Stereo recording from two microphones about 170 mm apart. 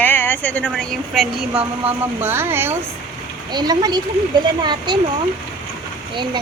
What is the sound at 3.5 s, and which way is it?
Speech, 25° right (ahead or behind).